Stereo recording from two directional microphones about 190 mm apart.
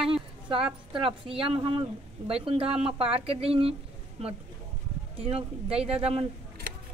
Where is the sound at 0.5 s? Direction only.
30° right (ahead or behind).